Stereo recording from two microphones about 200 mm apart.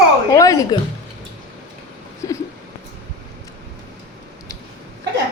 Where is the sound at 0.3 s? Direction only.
15° left (ahead or behind).